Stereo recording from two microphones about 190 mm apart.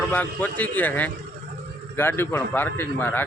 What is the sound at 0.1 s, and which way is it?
A man's voice, 10° left (ahead or behind).